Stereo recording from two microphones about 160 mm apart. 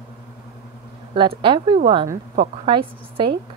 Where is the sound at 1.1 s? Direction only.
30° right (ahead or behind).